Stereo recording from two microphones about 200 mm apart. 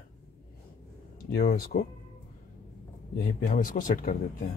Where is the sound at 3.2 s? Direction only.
45° left (ahead or behind).